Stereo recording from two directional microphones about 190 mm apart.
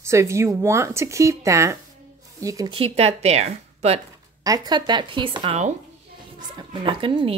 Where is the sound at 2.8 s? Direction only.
30° right (ahead or behind).